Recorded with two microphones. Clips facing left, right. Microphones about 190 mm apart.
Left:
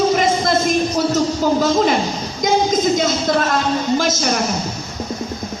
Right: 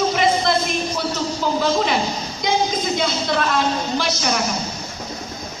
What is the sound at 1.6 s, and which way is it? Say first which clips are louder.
Speech: left 1 dB; 45° left (ahead or behind).